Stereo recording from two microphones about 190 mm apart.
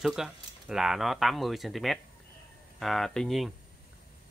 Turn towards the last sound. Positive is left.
turn(degrees=0)  # may be behind; listen again after turning